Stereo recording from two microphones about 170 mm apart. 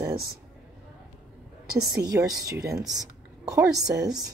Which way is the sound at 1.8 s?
20° right (ahead or behind).